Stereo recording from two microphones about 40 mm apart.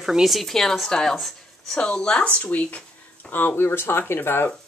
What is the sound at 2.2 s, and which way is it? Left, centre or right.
Speech, left.